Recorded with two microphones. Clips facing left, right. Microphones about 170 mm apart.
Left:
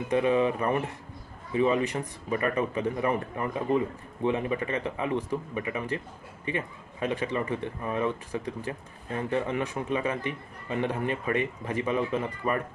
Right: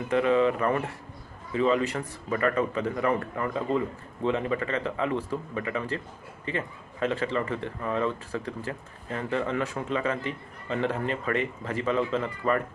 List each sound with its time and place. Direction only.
0.1 s speech: 20° left (ahead or behind)